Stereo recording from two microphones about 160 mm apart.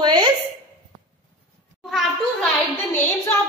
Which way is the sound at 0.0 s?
30° right (ahead or behind).